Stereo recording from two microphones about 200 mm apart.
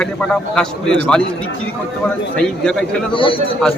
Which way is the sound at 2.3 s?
5° left (ahead or behind).